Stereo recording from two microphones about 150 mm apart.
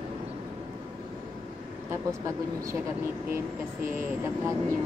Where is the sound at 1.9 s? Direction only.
20° right (ahead or behind).